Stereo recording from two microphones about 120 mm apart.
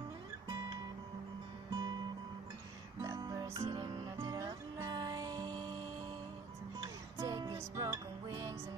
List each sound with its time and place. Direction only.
1.7 s music: 35° right (ahead or behind)
3.0 s music: 30° right (ahead or behind)
3.7 s music: 35° right (ahead or behind)
6.8 s music: 30° right (ahead or behind)